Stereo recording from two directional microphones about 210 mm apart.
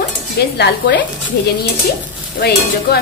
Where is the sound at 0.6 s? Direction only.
50° left (ahead or behind).